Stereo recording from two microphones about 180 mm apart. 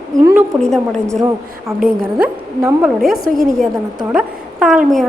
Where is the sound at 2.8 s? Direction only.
Centre (ahead or behind).